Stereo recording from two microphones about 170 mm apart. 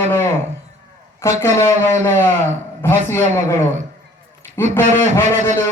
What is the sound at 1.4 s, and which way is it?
Speech, 15° left (ahead or behind).